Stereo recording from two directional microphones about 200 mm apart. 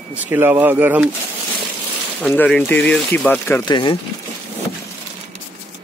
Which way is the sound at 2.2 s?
5° left (ahead or behind).